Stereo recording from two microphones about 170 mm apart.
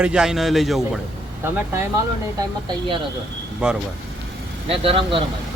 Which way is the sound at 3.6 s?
5° right (ahead or behind).